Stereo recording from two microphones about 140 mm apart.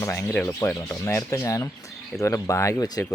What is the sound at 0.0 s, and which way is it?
Speech, 20° left (ahead or behind).